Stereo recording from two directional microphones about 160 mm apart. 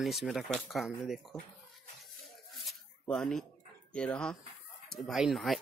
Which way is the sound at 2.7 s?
5° left (ahead or behind).